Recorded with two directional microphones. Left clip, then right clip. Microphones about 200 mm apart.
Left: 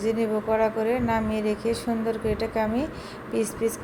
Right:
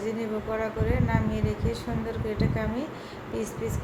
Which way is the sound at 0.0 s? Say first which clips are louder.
Left 6 dB; 35° left (ahead or behind).